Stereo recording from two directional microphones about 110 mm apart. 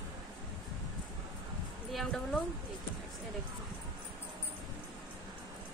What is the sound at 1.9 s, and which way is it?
Speech, centre (ahead or behind).